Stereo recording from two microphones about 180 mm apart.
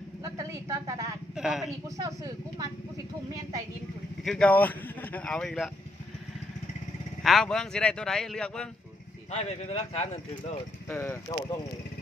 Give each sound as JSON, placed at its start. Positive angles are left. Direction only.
{"t": 0.2, "sound": "a sound", "side_deg": -15}
{"t": 1.3, "sound": "speech", "side_deg": 0}
{"t": 2.0, "sound": "speech", "side_deg": -20}
{"t": 4.2, "sound": "speech", "side_deg": 5}
{"t": 7.2, "sound": "speech", "side_deg": 5}
{"t": 9.3, "sound": "speech", "side_deg": 35}
{"t": 10.9, "sound": "speech", "side_deg": 15}